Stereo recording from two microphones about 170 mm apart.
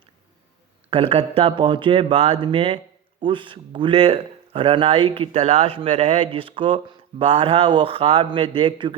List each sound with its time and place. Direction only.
0.9 s a man's voice: 35° right (ahead or behind)